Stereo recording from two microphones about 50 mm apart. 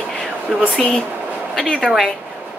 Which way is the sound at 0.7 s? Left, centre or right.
Centre.